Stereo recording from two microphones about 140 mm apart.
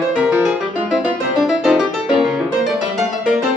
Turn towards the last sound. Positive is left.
turn(degrees=-5)  # may be behind; listen again after turning